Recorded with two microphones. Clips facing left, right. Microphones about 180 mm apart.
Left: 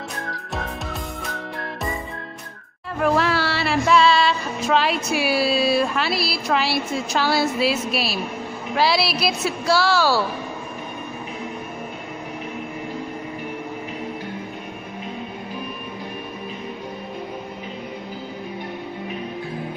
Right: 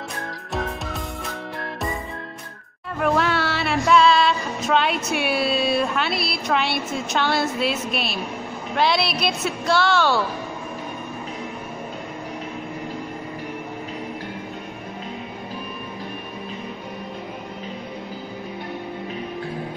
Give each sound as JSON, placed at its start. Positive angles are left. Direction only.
{"t": 3.0, "sound": "music", "side_deg": 0}
{"t": 8.7, "sound": "a woman's voice", "side_deg": 5}